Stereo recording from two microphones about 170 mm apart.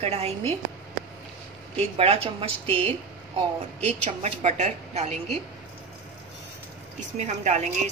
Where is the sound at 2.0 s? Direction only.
35° right (ahead or behind).